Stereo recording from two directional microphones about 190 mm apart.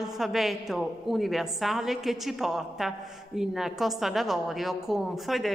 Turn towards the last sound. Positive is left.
turn(degrees=0)  # may be behind; listen again after turning